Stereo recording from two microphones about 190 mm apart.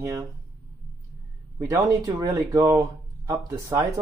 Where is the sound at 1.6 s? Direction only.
20° right (ahead or behind).